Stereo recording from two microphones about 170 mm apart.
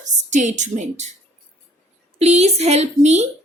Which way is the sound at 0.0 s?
45° right (ahead or behind).